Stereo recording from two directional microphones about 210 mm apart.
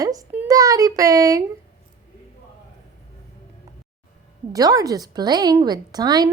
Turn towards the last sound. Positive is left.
turn(degrees=-20)  # may be behind; listen again after turning